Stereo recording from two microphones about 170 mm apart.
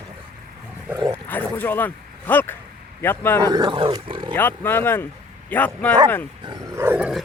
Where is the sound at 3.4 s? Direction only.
25° right (ahead or behind).